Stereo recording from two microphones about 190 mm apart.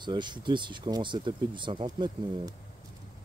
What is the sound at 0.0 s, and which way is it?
Speech, 25° right (ahead or behind).